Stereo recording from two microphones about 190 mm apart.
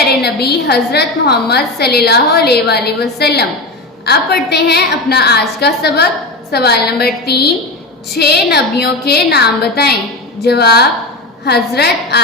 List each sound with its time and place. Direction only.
0.2 s a woman's voice: 55° left (ahead or behind)